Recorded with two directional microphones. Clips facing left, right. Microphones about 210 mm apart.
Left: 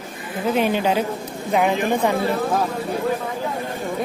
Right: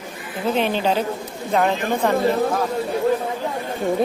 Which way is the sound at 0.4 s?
10° left (ahead or behind).